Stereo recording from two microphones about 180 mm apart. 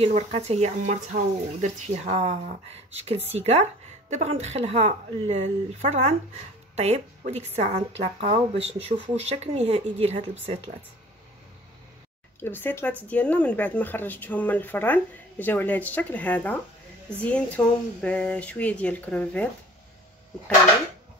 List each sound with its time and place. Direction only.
0.0 s speech: 35° right (ahead or behind)
12.4 s speech: 10° left (ahead or behind)